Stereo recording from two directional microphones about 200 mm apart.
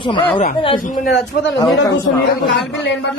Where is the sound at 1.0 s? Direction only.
60° left (ahead or behind).